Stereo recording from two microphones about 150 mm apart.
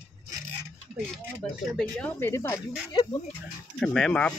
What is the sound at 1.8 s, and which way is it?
Speech, 10° left (ahead or behind).